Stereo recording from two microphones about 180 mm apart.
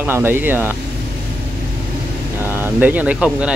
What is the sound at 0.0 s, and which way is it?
Speech, 10° right (ahead or behind).